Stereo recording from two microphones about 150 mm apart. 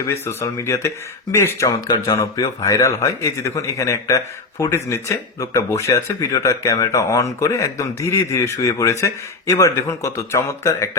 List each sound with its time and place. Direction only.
0.0 s speech: 20° left (ahead or behind)